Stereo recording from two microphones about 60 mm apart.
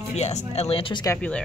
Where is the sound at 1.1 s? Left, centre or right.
Left.